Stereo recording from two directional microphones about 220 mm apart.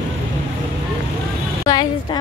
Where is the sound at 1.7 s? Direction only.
15° left (ahead or behind).